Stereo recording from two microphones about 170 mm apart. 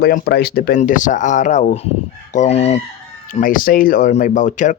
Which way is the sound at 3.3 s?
50° left (ahead or behind).